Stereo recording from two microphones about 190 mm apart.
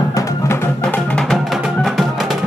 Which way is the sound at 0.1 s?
15° left (ahead or behind).